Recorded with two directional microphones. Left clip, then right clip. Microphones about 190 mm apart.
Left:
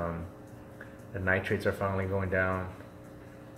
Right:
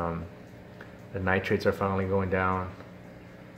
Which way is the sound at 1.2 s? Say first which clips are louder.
Right 3 dB; 30° right (ahead or behind).